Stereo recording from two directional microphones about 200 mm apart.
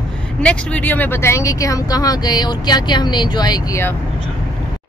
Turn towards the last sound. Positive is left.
turn(degrees=15)  # may be behind; listen again after turning